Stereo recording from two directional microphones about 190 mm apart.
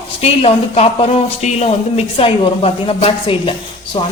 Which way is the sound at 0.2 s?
30° left (ahead or behind).